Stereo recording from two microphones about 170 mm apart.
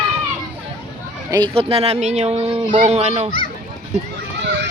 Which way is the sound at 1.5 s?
35° right (ahead or behind).